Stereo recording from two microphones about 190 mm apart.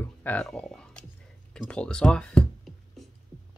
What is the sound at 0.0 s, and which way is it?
Speech, 10° left (ahead or behind).